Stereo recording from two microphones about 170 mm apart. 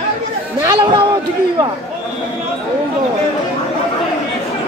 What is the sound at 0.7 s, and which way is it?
A man's voice, 25° right (ahead or behind).